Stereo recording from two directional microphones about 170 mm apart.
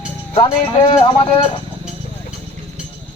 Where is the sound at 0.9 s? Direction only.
30° left (ahead or behind).